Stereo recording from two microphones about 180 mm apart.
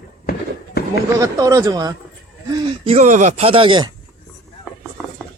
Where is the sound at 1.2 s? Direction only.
20° right (ahead or behind).